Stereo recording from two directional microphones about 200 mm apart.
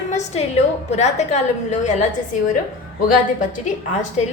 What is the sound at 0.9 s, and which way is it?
A woman's voice, 35° left (ahead or behind).